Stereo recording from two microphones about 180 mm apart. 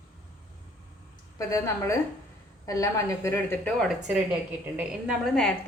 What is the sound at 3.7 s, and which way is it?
A woman's voice, centre (ahead or behind).